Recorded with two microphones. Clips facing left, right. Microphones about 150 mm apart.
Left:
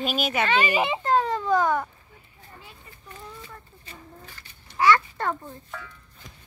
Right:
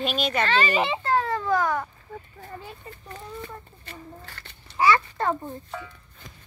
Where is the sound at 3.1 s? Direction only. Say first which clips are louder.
Right 4 dB; 55° right (ahead or behind); by 4.6 s 70° right (ahead or behind).